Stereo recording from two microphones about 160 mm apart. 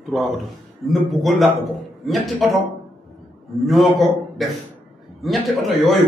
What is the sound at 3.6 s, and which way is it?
A man's voice, centre (ahead or behind).